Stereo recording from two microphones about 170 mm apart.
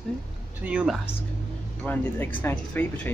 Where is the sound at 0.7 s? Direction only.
5° right (ahead or behind).